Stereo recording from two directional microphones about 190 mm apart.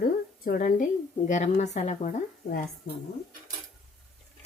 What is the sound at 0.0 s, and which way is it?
A woman's voice, 50° left (ahead or behind).